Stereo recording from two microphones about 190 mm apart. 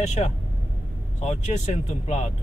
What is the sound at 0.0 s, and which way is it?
Speech, 35° left (ahead or behind).